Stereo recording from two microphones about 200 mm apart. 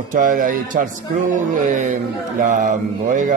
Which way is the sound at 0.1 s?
40° right (ahead or behind).